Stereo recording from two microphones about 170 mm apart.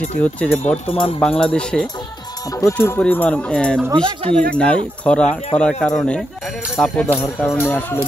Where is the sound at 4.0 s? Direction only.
35° right (ahead or behind).